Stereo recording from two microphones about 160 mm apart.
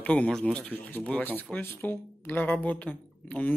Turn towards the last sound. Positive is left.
turn(degrees=10)  # may be behind; listen again after turning